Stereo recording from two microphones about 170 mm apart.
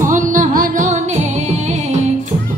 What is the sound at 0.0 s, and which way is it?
Music, 50° right (ahead or behind).